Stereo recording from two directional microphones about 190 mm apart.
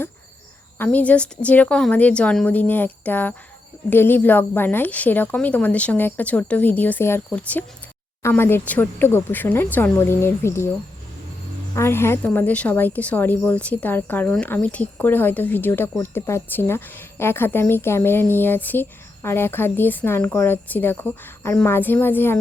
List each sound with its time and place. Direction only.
0.8 s a woman's voice: 10° left (ahead or behind)
11.7 s a woman's voice: 15° left (ahead or behind)